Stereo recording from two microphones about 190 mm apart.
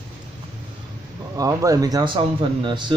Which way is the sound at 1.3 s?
15° right (ahead or behind).